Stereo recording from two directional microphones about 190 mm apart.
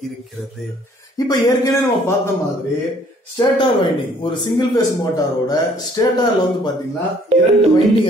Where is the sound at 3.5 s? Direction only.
25° left (ahead or behind).